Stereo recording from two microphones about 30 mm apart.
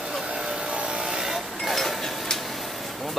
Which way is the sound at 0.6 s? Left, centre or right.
Right.